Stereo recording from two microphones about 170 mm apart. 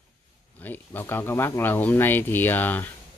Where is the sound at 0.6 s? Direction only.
10° left (ahead or behind).